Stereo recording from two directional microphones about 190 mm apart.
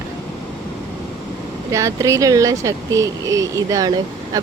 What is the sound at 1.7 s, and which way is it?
Speech, 15° right (ahead or behind).